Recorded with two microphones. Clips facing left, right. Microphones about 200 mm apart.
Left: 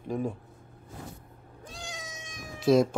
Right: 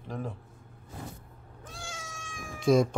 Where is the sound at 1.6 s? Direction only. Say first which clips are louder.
Left 1 dB; 20° left (ahead or behind).